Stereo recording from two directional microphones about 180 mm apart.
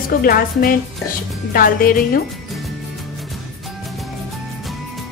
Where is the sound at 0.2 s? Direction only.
55° left (ahead or behind).